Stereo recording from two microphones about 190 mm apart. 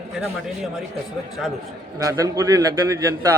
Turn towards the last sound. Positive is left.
turn(degrees=-15)  # may be behind; listen again after turning